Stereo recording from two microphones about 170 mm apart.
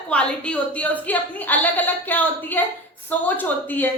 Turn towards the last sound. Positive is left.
turn(degrees=10)  # may be behind; listen again after turning